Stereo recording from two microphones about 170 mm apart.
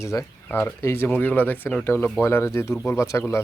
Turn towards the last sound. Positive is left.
turn(degrees=15)  # may be behind; listen again after turning